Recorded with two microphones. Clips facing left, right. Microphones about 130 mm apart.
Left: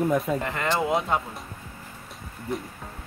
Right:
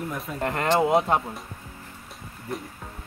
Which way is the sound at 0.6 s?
35° right (ahead or behind).